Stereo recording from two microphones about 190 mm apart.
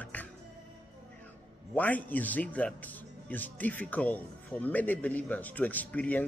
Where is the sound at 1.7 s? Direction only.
10° left (ahead or behind).